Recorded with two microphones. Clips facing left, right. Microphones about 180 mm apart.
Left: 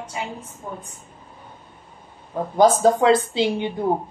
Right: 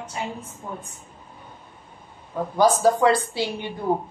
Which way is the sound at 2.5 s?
20° left (ahead or behind).